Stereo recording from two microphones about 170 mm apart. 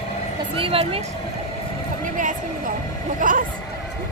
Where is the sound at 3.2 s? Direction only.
50° right (ahead or behind).